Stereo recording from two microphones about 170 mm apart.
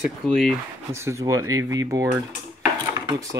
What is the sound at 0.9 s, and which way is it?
Speech, 15° right (ahead or behind).